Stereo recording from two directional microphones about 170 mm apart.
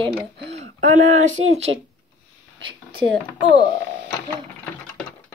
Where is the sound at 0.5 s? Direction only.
45° right (ahead or behind).